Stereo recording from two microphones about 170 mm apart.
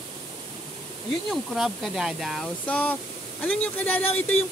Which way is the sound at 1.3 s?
Centre (ahead or behind).